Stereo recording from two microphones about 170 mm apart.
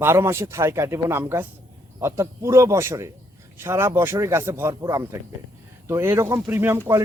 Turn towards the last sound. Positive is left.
turn(degrees=-15)  # may be behind; listen again after turning